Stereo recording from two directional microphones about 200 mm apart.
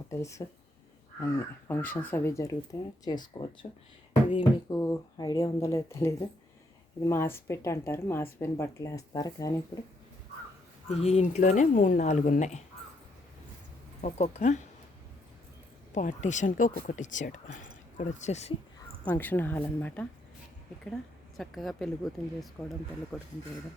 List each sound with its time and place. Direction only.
0.1 s speech: 15° left (ahead or behind)
1.6 s speech: 10° left (ahead or behind)
11.0 s speech: 35° left (ahead or behind)
14.0 s speech: 35° left (ahead or behind)
15.9 s speech: 40° left (ahead or behind)
19.0 s a woman's voice: 10° left (ahead or behind)